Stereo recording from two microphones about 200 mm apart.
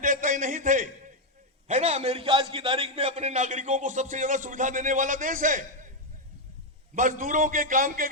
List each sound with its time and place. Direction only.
0.0 s a sound: 40° right (ahead or behind)
1.6 s a man's voice: 35° right (ahead or behind)
6.9 s a man's voice: 40° right (ahead or behind)